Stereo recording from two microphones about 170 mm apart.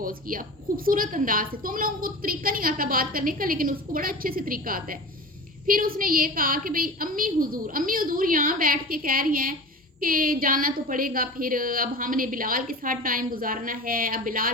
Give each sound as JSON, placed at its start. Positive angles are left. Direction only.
{"t": 0.0, "sound": "a woman's voice", "side_deg": -55}